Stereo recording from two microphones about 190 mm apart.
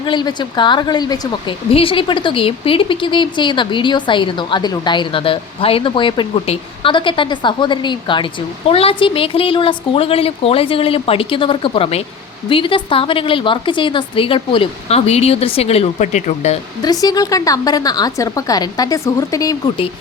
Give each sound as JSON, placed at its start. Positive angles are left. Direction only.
{"t": 0.0, "sound": "a woman's voice", "side_deg": 25}
{"t": 16.8, "sound": "a woman's voice", "side_deg": 20}